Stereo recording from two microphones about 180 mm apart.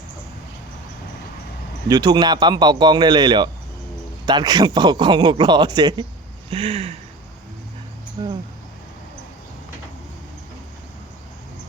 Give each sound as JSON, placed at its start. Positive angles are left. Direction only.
{"t": 1.9, "sound": "a man's voice", "side_deg": -20}
{"t": 6.5, "sound": "a sound", "side_deg": -35}
{"t": 8.2, "sound": "a man's voice", "side_deg": -25}